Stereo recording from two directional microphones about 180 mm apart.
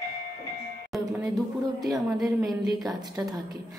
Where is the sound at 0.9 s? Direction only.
Centre (ahead or behind).